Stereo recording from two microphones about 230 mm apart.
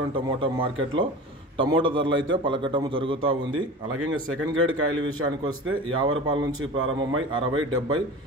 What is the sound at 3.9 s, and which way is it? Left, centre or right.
Speech, right.